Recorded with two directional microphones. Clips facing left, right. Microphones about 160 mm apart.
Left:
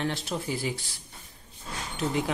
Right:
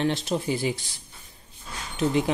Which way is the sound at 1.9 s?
20° right (ahead or behind).